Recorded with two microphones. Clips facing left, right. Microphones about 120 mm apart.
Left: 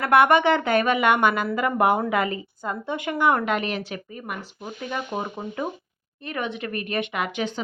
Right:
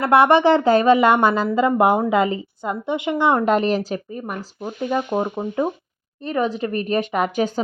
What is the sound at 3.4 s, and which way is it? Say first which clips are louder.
A woman's voice: right 8 dB; 35° right (ahead or behind).